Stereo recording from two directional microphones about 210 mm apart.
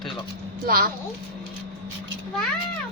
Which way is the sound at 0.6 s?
45° right (ahead or behind).